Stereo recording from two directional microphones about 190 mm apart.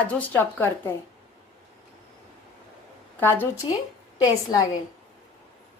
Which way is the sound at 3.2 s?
10° left (ahead or behind).